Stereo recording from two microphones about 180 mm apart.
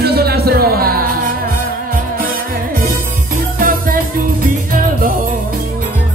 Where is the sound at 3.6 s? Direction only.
50° right (ahead or behind).